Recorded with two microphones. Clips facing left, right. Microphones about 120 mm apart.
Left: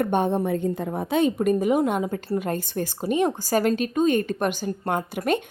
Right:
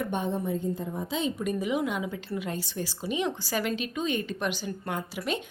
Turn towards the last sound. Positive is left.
turn(degrees=50)  # may be behind; listen again after turning